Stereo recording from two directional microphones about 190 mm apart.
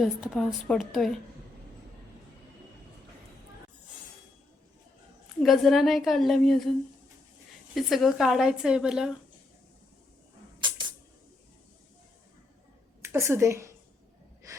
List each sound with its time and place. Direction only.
0.0 s a woman's voice: centre (ahead or behind)
5.4 s a woman's voice: centre (ahead or behind)
7.8 s a woman's voice: centre (ahead or behind)
10.6 s a sound: 25° right (ahead or behind)
13.0 s a woman's voice: 15° right (ahead or behind)